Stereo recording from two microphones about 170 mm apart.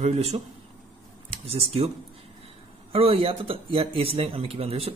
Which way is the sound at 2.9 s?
35° right (ahead or behind).